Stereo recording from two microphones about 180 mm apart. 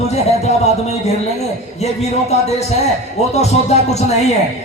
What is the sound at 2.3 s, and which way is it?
A man's voice, 35° left (ahead or behind).